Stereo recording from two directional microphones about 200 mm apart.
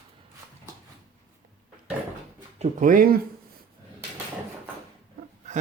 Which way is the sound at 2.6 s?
40° right (ahead or behind).